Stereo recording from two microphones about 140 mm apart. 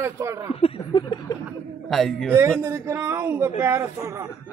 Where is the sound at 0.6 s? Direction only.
40° left (ahead or behind).